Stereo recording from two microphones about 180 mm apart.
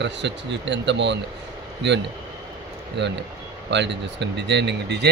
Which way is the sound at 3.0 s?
75° right (ahead or behind).